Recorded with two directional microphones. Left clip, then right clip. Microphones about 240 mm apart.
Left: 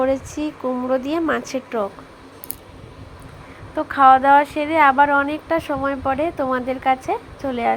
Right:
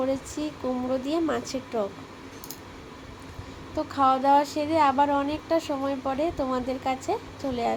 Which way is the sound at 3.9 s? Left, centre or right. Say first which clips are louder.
Left 9 dB; centre.